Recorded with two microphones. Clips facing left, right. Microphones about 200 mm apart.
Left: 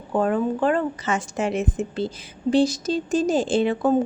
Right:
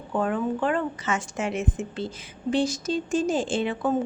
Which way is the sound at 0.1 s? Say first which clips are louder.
Left 4 dB; 40° left (ahead or behind).